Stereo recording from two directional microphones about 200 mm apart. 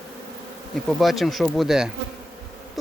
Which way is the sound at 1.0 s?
Centre (ahead or behind).